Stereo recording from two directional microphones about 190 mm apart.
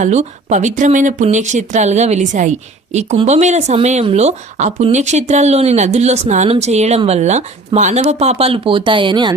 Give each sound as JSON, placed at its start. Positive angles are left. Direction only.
{"t": 0.0, "sound": "speech", "side_deg": -35}